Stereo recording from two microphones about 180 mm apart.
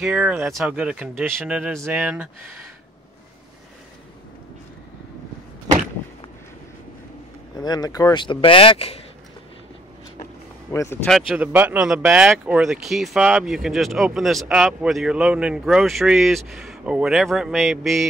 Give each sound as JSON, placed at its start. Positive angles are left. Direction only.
{"t": 0.0, "sound": "speech", "side_deg": -5}
{"t": 7.5, "sound": "speech", "side_deg": 20}
{"t": 10.7, "sound": "speech", "side_deg": 15}
{"t": 11.1, "sound": "speech", "side_deg": 0}